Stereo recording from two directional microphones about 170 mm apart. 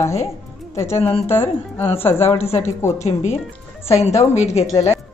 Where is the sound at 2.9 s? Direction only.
40° left (ahead or behind).